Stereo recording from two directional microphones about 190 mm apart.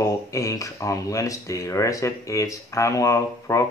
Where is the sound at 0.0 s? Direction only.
15° left (ahead or behind).